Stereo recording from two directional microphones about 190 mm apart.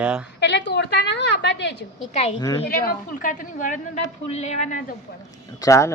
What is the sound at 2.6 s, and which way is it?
A woman's voice, 50° left (ahead or behind).